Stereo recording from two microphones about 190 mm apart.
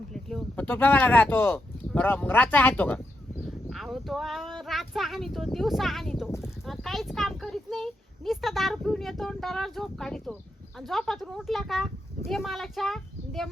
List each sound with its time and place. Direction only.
0.1 s speech: centre (ahead or behind)